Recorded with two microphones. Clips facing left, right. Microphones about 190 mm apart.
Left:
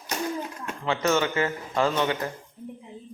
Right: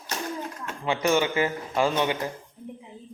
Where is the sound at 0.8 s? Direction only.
15° right (ahead or behind).